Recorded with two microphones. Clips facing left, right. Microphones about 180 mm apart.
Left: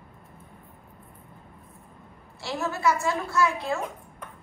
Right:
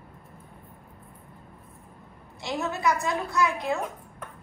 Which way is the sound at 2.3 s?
20° right (ahead or behind).